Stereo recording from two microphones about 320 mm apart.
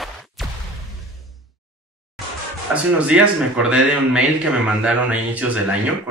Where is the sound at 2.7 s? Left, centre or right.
Centre.